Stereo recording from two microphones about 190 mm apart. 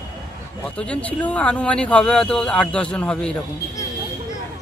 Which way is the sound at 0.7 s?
5° left (ahead or behind).